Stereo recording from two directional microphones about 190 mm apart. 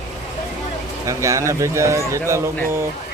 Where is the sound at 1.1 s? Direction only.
15° right (ahead or behind).